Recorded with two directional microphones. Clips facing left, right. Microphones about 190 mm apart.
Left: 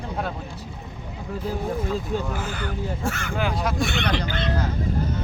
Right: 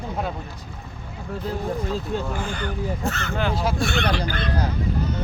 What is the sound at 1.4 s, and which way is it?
Speech, 10° left (ahead or behind).